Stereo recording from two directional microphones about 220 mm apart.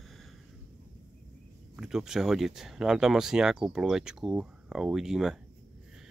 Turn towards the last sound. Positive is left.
turn(degrees=0)  # may be behind; listen again after turning